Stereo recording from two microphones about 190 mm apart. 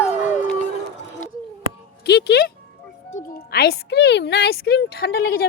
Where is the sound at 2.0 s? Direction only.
60° left (ahead or behind).